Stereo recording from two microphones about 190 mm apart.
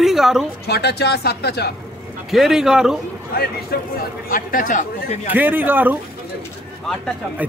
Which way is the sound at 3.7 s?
55° left (ahead or behind).